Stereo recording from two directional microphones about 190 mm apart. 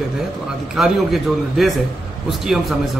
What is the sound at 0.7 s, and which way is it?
Speech, centre (ahead or behind).